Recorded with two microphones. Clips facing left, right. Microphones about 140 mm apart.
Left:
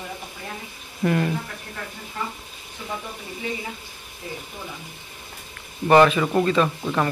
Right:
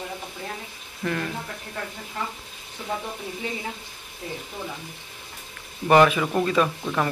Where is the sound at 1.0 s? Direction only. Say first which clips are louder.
Left 6 dB; 20° left (ahead or behind).